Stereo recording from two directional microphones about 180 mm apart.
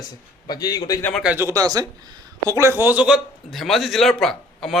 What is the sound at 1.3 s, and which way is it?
Speech, 15° right (ahead or behind).